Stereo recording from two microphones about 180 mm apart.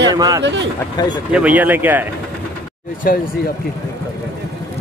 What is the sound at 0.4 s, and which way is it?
Speech, 85° right.